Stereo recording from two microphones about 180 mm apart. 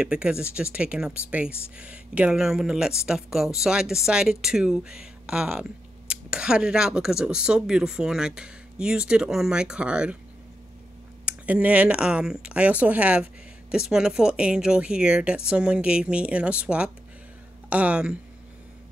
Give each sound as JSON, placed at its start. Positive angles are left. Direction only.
{"t": 0.0, "sound": "speech", "side_deg": -5}
{"t": 11.2, "sound": "speech", "side_deg": -5}